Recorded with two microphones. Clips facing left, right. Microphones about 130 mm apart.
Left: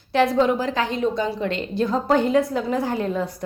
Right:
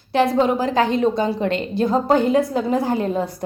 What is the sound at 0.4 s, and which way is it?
A woman's voice, 40° right (ahead or behind).